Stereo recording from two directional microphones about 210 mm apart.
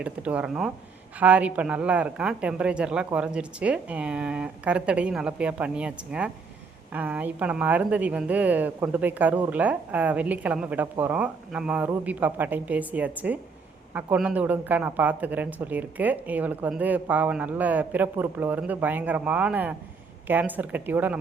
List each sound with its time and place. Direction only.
0.0 s speech: 5° right (ahead or behind)